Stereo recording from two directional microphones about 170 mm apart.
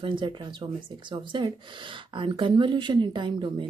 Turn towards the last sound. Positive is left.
turn(degrees=-30)  # may be behind; listen again after turning